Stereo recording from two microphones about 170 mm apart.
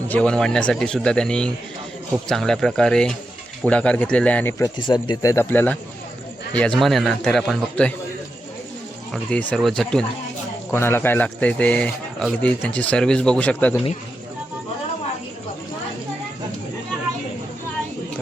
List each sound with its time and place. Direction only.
0.1 s a man's voice: 5° left (ahead or behind)
4.8 s a man's voice: 25° left (ahead or behind); by 7.9 s 5° left (ahead or behind)
9.1 s a man's voice: 5° left (ahead or behind)